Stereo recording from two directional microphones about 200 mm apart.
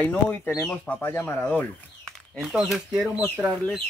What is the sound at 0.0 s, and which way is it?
Speech, 5° left (ahead or behind).